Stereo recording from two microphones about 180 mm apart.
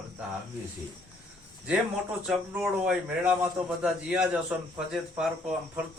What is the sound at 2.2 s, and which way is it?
A man's voice, 10° right (ahead or behind).